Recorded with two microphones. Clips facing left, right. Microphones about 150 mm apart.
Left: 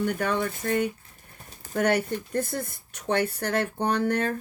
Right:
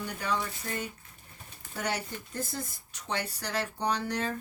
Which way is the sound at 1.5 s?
40° left (ahead or behind).